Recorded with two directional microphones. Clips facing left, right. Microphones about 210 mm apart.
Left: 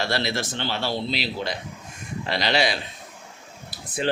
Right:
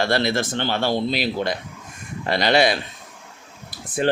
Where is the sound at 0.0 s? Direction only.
50° right (ahead or behind).